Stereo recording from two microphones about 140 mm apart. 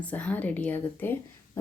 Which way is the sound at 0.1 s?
10° left (ahead or behind).